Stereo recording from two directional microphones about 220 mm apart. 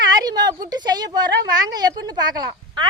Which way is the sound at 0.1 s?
15° right (ahead or behind).